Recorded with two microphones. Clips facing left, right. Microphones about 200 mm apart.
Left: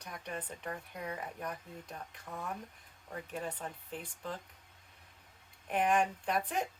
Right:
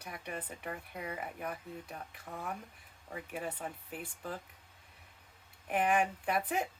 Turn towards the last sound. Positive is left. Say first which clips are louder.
# right 1 dB
turn(degrees=-5)  # may be behind; listen again after turning